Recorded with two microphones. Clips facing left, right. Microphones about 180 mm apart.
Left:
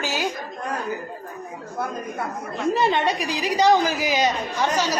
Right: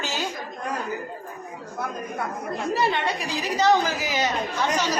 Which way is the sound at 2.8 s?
20° left (ahead or behind).